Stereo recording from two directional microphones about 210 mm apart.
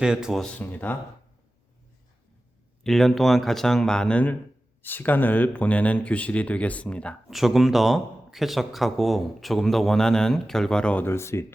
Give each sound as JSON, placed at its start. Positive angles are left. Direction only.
{"t": 0.0, "sound": "speech", "side_deg": -5}
{"t": 2.8, "sound": "speech", "side_deg": 0}